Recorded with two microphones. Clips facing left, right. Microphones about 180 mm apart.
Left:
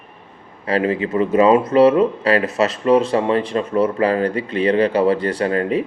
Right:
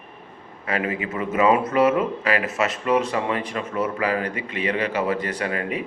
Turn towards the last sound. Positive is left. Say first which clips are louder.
# left 8 dB
turn(degrees=35)  # may be behind; listen again after turning